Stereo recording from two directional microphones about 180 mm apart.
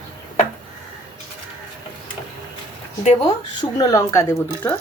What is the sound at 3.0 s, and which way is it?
Speech, 30° left (ahead or behind).